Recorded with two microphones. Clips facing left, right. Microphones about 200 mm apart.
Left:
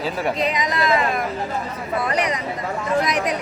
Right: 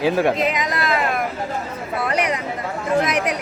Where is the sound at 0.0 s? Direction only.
90° right.